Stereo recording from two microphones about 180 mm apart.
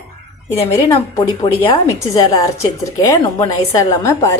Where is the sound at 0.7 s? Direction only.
20° left (ahead or behind).